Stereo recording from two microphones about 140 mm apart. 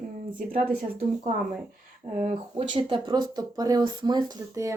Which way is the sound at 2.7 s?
35° right (ahead or behind).